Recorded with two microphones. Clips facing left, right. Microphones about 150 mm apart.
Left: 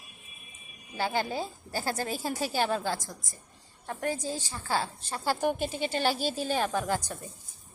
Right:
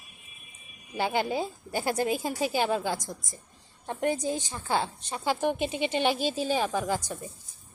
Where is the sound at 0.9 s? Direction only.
20° right (ahead or behind).